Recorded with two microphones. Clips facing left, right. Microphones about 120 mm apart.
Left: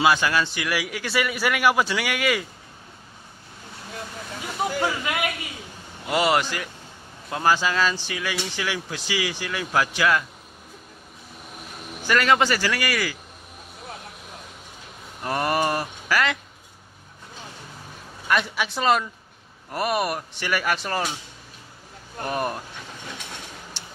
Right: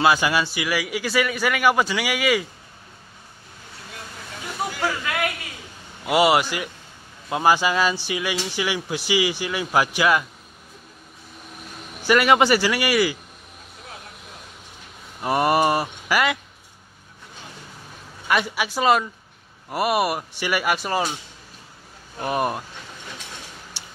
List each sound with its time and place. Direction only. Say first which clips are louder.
0.0 s a man's voice: right 1 dB; 10° right (ahead or behind)
6.0 s speech: right 4 dB; 10° right (ahead or behind)
12.1 s speech: right 3 dB; 15° right (ahead or behind)
15.2 s speech: right 4 dB; 15° right (ahead or behind)
18.3 s a man's voice: right 1 dB; 5° right (ahead or behind)
22.2 s speech: right 3 dB; 10° right (ahead or behind)
23.8 s tick-tock: left 1 dB; 10° right (ahead or behind)